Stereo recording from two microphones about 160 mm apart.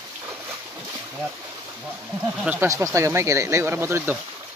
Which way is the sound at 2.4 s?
15° right (ahead or behind).